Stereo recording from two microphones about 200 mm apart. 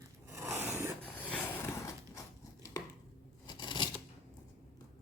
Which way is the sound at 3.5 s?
20° left (ahead or behind).